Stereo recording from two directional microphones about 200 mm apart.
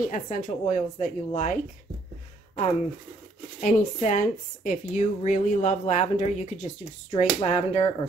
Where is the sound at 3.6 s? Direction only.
40° left (ahead or behind).